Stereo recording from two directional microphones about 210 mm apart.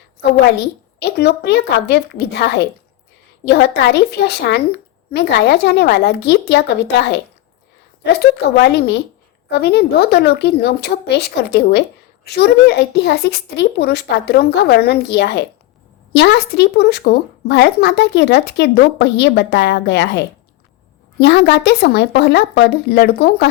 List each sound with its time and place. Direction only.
0.9 s speech: 50° left (ahead or behind)